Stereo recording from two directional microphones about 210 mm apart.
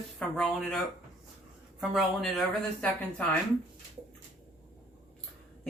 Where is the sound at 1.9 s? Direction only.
Centre (ahead or behind).